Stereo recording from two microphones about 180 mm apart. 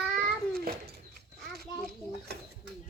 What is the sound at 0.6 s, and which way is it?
Cat, 55° right (ahead or behind).